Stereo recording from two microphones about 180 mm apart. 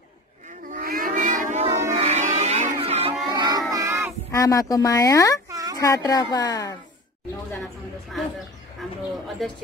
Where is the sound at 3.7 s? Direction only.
15° right (ahead or behind).